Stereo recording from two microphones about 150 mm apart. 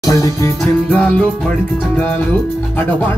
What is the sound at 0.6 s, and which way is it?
Music, 5° left (ahead or behind).